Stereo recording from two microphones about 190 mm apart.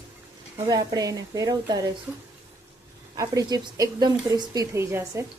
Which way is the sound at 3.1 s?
20° right (ahead or behind).